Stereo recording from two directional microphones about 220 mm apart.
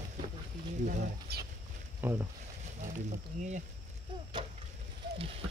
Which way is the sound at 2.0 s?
10° right (ahead or behind).